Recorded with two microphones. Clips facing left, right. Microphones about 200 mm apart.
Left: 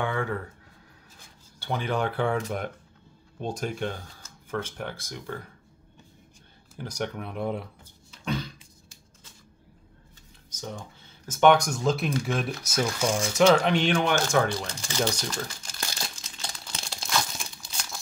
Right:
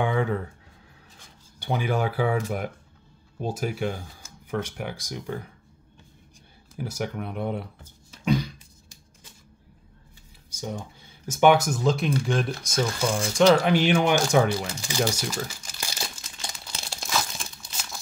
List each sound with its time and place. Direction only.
0.0 s a sound: 20° right (ahead or behind)
1.6 s speech: 10° right (ahead or behind)
6.8 s speech: 5° right (ahead or behind)
8.3 s a sound: 15° right (ahead or behind)
10.5 s speech: 15° right (ahead or behind)
17.1 s crumpling: centre (ahead or behind)